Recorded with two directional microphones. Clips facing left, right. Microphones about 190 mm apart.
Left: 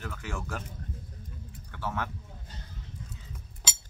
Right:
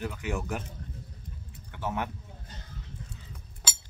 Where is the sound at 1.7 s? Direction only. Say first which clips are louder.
Right 2 dB; 20° right (ahead or behind).